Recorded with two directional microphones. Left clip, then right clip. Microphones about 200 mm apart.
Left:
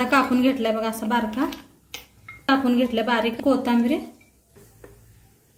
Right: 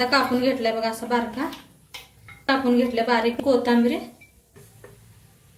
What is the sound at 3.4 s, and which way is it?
Speech, 50° left (ahead or behind).